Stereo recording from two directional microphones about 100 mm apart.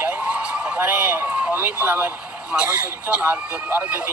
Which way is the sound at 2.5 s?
10° right (ahead or behind).